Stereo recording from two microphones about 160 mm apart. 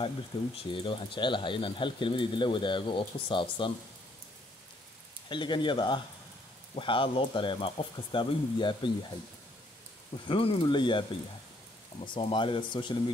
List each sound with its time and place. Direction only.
0.6 s speech: 30° left (ahead or behind)
5.3 s speech: 30° left (ahead or behind)
10.2 s speech: 35° left (ahead or behind)